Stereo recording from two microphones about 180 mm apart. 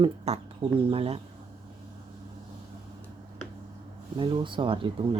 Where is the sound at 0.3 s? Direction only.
35° right (ahead or behind).